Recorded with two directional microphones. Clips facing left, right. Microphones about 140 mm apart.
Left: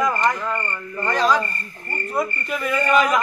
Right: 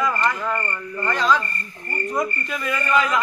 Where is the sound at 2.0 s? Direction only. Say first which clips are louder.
Even; 5° left (ahead or behind).